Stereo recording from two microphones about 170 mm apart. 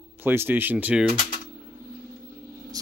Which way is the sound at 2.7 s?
20° right (ahead or behind).